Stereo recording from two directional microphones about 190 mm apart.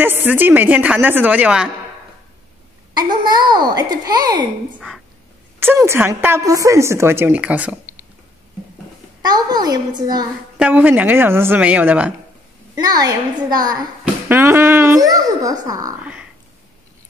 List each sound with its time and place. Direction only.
0.0 s a woman's voice: 10° right (ahead or behind)
2.9 s speech: 20° right (ahead or behind)
4.7 s speech: centre (ahead or behind)
5.6 s a woman's voice: 10° right (ahead or behind)
9.2 s speech: 20° right (ahead or behind)
10.6 s a woman's voice: 10° right (ahead or behind)
12.7 s speech: 20° right (ahead or behind)
16.0 s a sound: 5° right (ahead or behind)